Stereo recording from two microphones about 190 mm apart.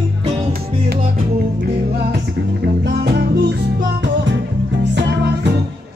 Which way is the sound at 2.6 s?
60° right (ahead or behind).